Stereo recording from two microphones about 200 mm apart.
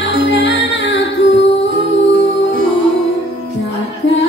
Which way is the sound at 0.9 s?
65° left (ahead or behind).